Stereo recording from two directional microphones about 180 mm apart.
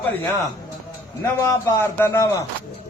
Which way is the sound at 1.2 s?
15° left (ahead or behind).